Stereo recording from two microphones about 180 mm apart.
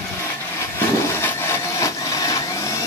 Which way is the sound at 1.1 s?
15° left (ahead or behind).